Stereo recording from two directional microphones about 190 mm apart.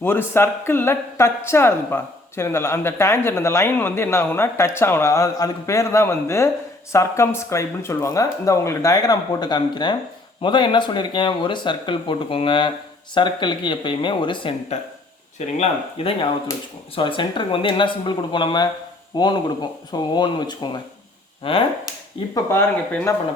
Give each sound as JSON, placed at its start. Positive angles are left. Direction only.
{"t": 0.0, "sound": "speech", "side_deg": 10}
{"t": 22.4, "sound": "speech", "side_deg": 15}